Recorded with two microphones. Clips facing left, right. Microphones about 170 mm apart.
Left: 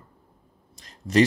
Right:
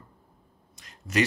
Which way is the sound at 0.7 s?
35° left (ahead or behind).